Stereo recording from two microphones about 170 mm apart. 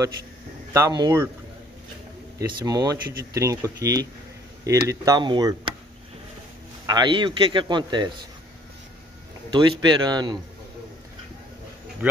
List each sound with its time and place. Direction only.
0.7 s speech: 20° right (ahead or behind)
2.6 s speech: 20° right (ahead or behind)
6.9 s speech: 25° right (ahead or behind)
9.5 s speech: 25° right (ahead or behind)
12.0 s speech: 10° right (ahead or behind)